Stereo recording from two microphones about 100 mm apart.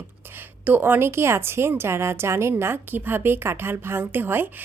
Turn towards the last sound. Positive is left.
turn(degrees=-20)  # may be behind; listen again after turning